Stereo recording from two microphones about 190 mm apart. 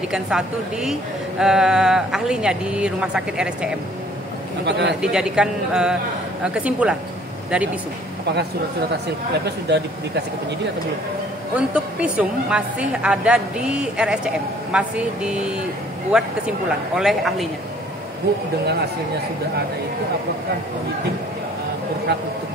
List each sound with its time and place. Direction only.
0.1 s a woman's voice: 5° right (ahead or behind)
4.6 s speech: 65° right (ahead or behind)
5.0 s a woman's voice: 5° right (ahead or behind)
8.9 s speech: 60° right (ahead or behind)
11.5 s a woman's voice: 5° right (ahead or behind)